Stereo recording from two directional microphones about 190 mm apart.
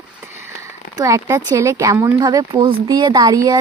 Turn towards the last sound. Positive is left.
turn(degrees=-20)  # may be behind; listen again after turning